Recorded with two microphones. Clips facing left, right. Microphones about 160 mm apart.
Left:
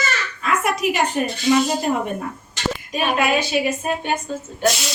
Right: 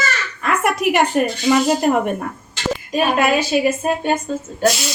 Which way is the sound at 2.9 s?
40° right (ahead or behind).